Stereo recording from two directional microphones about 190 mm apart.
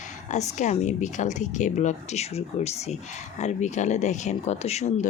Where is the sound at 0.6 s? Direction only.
35° left (ahead or behind).